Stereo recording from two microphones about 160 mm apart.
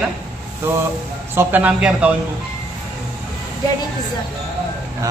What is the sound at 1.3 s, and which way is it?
Speech, 10° right (ahead or behind).